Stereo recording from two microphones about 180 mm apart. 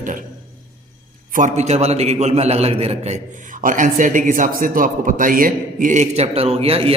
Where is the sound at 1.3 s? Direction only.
45° right (ahead or behind).